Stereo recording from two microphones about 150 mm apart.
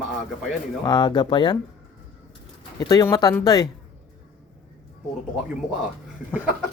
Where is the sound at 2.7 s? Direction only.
25° left (ahead or behind).